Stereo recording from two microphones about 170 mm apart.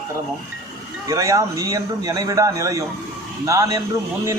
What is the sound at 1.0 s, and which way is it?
A man's voice, 20° right (ahead or behind).